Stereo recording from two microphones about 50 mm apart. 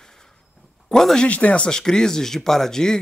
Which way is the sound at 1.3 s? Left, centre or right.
Left.